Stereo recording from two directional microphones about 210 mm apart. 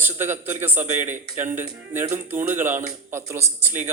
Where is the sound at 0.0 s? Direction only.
10° right (ahead or behind).